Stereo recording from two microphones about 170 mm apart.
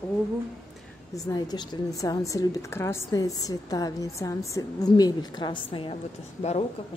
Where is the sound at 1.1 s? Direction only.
20° left (ahead or behind).